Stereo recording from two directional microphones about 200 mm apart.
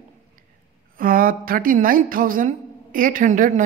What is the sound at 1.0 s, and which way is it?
A woman's voice, 45° right (ahead or behind).